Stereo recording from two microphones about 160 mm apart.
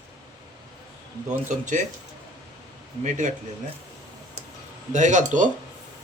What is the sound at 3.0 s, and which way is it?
Speech, 50° right (ahead or behind).